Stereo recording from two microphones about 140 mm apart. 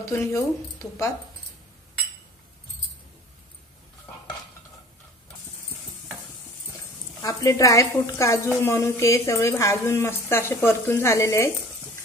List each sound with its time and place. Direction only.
0.0 s speech: 20° left (ahead or behind)
7.2 s a woman's voice: 25° left (ahead or behind)